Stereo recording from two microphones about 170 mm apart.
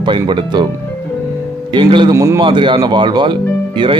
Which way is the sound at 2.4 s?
30° right (ahead or behind).